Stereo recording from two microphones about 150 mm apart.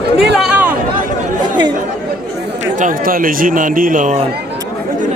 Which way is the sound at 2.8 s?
70° right (ahead or behind).